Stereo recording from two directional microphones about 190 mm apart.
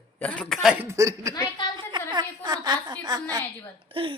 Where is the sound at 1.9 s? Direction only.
25° right (ahead or behind).